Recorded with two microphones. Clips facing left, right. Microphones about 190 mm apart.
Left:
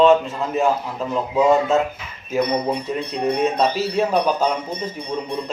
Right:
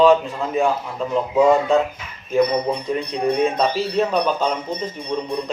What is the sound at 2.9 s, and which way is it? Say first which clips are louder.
Speech: right 1 dB; 5° left (ahead or behind).